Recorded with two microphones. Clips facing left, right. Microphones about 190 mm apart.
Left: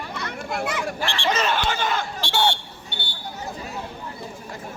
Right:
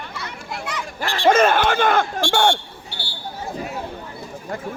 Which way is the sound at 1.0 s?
40° right (ahead or behind).